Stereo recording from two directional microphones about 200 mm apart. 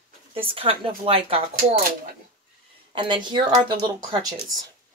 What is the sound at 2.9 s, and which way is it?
Speech, 25° right (ahead or behind).